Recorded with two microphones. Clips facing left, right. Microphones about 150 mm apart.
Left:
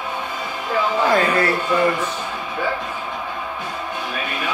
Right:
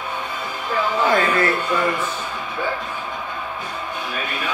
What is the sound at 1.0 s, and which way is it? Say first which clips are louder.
Speech: even; 35° left (ahead or behind).